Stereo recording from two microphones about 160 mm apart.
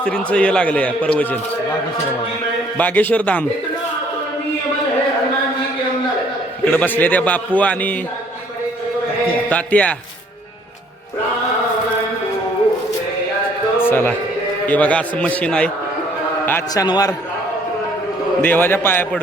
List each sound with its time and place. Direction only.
0.0 s a man's voice: 5° left (ahead or behind)
2.7 s a man's voice: 10° left (ahead or behind)
6.7 s a man's voice: 10° left (ahead or behind)
9.5 s a man's voice: 10° left (ahead or behind)
13.8 s a man's voice: 15° left (ahead or behind)
16.8 s a man's voice: 25° left (ahead or behind)
18.4 s a man's voice: 10° left (ahead or behind)